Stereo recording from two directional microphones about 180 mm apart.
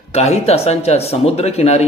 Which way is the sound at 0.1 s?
35° left (ahead or behind).